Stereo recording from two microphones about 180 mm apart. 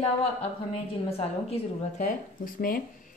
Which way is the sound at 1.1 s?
35° left (ahead or behind).